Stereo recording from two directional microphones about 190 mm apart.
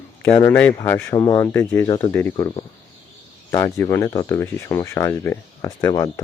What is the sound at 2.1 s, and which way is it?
Speech, 10° left (ahead or behind).